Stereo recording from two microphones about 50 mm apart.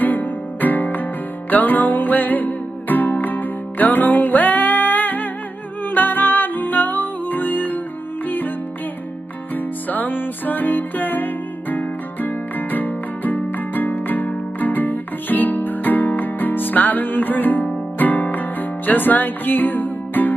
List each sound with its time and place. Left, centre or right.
0.0 s music: left
9.8 s music: left